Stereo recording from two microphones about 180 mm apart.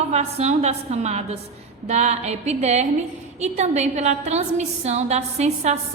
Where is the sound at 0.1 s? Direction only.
35° right (ahead or behind).